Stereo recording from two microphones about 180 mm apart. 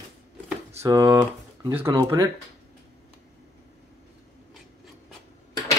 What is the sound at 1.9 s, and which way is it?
Speech, 25° right (ahead or behind).